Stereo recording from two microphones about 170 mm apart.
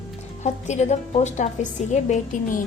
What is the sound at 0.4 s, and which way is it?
A woman's voice, 40° left (ahead or behind).